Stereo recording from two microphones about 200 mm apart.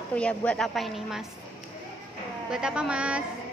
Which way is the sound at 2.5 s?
5° right (ahead or behind).